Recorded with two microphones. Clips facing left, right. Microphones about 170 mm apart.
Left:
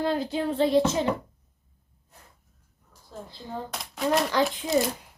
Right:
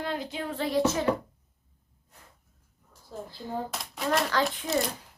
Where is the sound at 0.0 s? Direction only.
30° left (ahead or behind).